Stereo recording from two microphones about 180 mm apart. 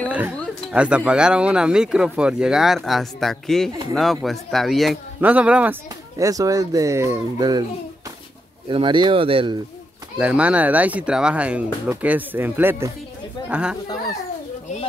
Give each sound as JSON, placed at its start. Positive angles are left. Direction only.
{"t": 0.1, "sound": "speech", "side_deg": -5}
{"t": 8.6, "sound": "speech", "side_deg": -25}
{"t": 10.1, "sound": "speech", "side_deg": -5}